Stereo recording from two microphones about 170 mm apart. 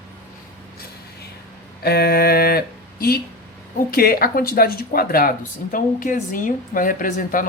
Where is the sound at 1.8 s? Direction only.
65° left (ahead or behind).